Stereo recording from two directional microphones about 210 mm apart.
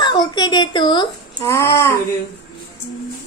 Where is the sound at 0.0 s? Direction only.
20° left (ahead or behind).